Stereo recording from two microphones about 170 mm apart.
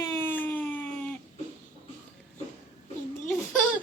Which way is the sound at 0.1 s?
10° left (ahead or behind).